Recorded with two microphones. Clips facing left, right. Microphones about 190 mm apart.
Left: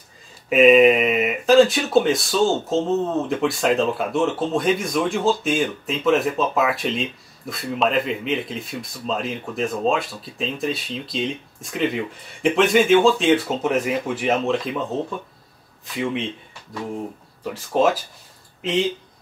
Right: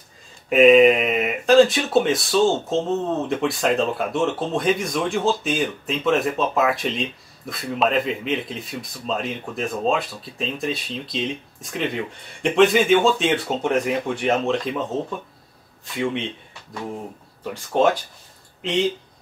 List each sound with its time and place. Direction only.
0.5 s speech: centre (ahead or behind)
17.4 s speech: centre (ahead or behind)